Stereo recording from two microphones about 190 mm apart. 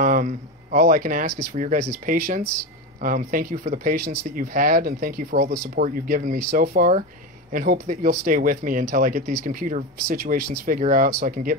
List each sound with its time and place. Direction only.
0.0 s speech: 45° right (ahead or behind)